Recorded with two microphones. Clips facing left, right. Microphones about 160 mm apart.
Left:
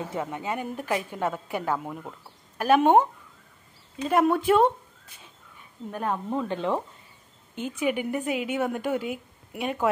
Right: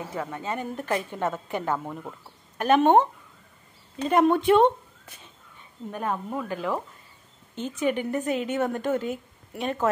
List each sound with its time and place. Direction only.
0.1 s a woman's voice: 15° left (ahead or behind)
5.9 s speech: 5° right (ahead or behind)
6.3 s speech: 25° left (ahead or behind)
7.5 s a woman's voice: 10° left (ahead or behind)